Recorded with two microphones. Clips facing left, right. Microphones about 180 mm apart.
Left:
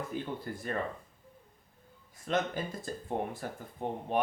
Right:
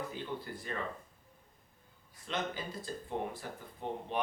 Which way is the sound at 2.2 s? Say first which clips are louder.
Left 6 dB; 50° left (ahead or behind).